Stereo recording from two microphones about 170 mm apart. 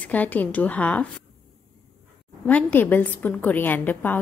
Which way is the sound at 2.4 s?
10° left (ahead or behind).